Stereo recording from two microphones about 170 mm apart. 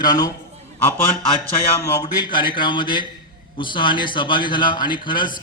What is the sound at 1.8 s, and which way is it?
A man's voice, 25° left (ahead or behind).